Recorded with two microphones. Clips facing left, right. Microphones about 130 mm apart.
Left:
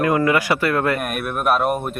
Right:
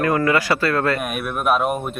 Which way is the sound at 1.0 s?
Centre (ahead or behind).